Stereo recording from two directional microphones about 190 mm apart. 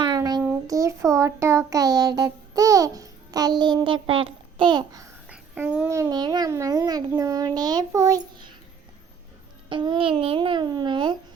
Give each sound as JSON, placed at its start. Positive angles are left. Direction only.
{"t": 0.0, "sound": "child singing", "side_deg": -20}
{"t": 0.4, "sound": "a sound", "side_deg": -15}
{"t": 5.3, "sound": "a child's voice", "side_deg": -5}
{"t": 9.6, "sound": "a child's voice", "side_deg": -25}